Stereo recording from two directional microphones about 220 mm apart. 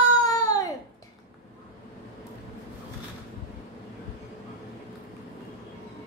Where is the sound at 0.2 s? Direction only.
15° left (ahead or behind).